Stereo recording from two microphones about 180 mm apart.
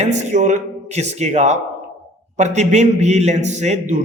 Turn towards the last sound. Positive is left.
turn(degrees=-40)  # may be behind; listen again after turning